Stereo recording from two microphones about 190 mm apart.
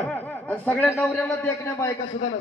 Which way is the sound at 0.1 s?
10° left (ahead or behind).